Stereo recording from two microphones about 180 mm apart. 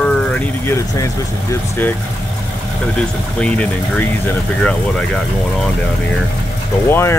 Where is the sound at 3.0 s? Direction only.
5° left (ahead or behind).